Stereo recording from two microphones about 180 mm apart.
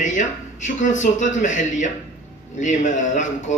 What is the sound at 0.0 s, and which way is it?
Speech, 45° left (ahead or behind).